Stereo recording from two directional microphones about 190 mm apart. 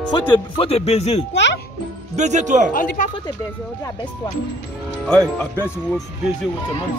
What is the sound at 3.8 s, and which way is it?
Speech, 25° left (ahead or behind).